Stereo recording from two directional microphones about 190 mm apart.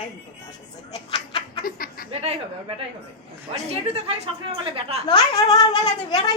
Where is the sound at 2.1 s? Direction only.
35° right (ahead or behind).